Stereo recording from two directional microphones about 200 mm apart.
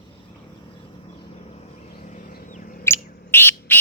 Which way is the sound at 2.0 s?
40° left (ahead or behind).